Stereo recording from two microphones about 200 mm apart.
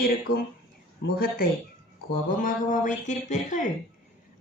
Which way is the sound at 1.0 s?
50° left (ahead or behind).